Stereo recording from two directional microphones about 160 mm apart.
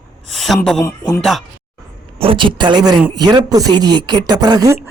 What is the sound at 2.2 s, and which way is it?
A woman's voice, 35° right (ahead or behind).